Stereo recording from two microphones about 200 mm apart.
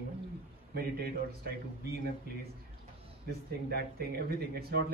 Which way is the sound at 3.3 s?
50° right (ahead or behind).